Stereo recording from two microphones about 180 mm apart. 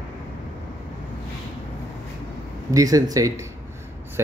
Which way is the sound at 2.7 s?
20° right (ahead or behind).